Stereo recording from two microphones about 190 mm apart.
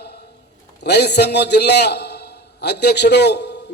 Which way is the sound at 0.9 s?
60° left (ahead or behind).